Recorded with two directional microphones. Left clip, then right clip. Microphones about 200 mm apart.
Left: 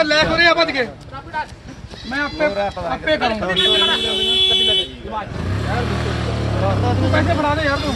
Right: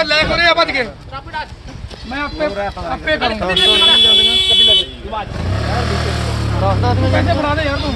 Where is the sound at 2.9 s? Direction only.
5° left (ahead or behind).